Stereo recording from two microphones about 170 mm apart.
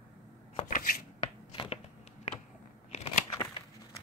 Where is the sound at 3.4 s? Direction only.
20° left (ahead or behind).